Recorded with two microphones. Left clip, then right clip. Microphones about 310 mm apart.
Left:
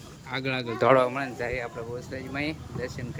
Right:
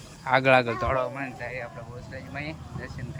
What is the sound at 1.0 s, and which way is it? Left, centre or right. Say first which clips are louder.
Speech: left 4 dB; left.